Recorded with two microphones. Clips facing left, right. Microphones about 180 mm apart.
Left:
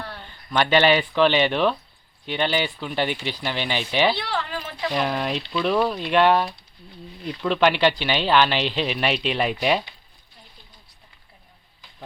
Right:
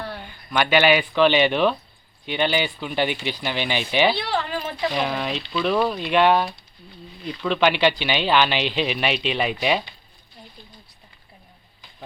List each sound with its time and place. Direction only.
0.1 s speech: 10° right (ahead or behind)
4.2 s speech: 20° right (ahead or behind)
4.9 s speech: 5° left (ahead or behind)